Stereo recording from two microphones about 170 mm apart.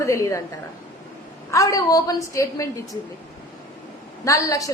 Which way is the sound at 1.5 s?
20° left (ahead or behind).